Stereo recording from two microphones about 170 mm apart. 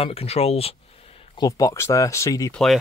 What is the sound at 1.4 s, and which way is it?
Speech, 20° left (ahead or behind).